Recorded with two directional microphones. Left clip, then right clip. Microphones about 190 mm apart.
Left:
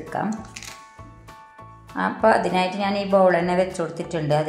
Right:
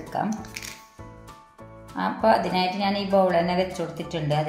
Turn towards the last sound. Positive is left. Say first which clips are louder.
# left 4 dB
turn(degrees=25)  # may be behind; listen again after turning